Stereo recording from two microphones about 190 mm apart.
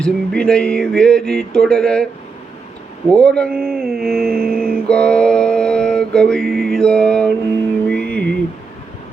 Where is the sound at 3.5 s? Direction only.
50° right (ahead or behind).